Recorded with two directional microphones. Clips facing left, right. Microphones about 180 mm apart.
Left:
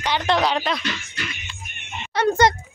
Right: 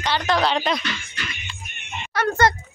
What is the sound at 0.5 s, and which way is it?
Speech, centre (ahead or behind).